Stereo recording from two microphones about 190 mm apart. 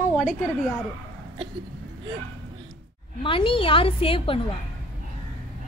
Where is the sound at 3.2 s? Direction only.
30° left (ahead or behind).